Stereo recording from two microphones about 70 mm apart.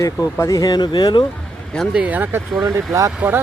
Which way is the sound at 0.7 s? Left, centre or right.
Left.